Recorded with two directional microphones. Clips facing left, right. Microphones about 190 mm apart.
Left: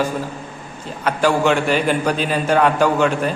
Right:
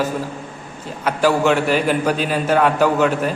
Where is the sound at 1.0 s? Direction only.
5° right (ahead or behind).